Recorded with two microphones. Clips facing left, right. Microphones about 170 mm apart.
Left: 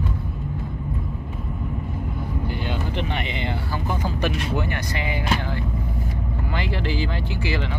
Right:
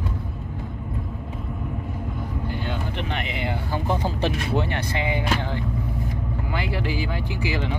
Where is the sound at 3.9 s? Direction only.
30° right (ahead or behind).